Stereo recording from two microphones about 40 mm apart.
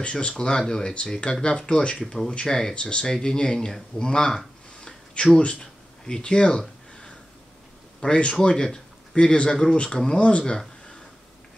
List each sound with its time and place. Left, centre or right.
0.0 s speech: left
2.3 s speech: centre
4.8 s a sound: left
6.0 s speech: left
8.0 s speech: left
10.4 s speech: centre